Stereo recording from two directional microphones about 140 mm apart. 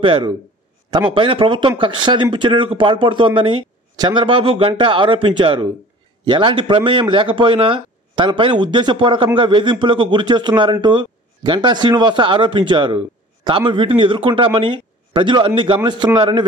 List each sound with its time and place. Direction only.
0.0 s speech: 40° right (ahead or behind)